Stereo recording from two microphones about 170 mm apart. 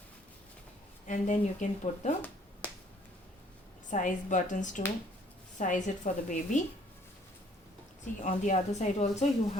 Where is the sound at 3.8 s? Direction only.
45° left (ahead or behind).